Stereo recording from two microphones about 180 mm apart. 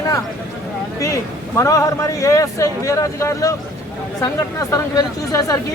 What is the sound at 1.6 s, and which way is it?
A man's voice, 15° left (ahead or behind).